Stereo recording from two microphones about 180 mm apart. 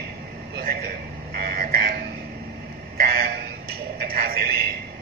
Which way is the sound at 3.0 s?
55° right (ahead or behind).